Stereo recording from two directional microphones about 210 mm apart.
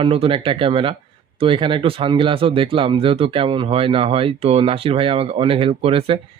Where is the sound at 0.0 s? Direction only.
25° right (ahead or behind).